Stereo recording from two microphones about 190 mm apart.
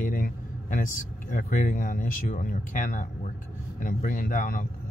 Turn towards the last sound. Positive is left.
turn(degrees=45)  # may be behind; listen again after turning